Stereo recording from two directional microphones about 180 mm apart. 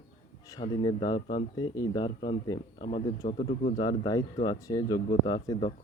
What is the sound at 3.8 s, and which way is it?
Speech, 20° left (ahead or behind).